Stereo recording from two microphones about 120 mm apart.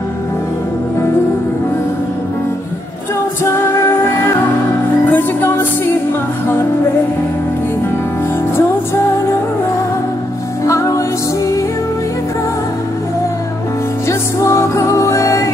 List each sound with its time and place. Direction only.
5.0 s music: 20° left (ahead or behind)
10.6 s music: 25° left (ahead or behind)
14.0 s music: 25° left (ahead or behind)